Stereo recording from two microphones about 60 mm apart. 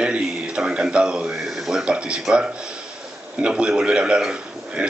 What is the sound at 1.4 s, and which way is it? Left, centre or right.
Speech, centre.